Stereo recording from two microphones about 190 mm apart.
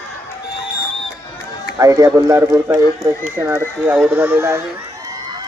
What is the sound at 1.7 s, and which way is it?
Speech, 20° right (ahead or behind).